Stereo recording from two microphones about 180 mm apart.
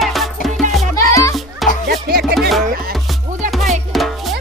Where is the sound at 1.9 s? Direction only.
60° right (ahead or behind).